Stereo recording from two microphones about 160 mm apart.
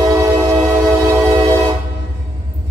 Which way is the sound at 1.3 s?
25° right (ahead or behind).